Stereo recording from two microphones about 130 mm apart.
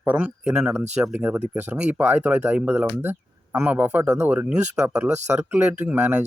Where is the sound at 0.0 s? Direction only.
10° right (ahead or behind).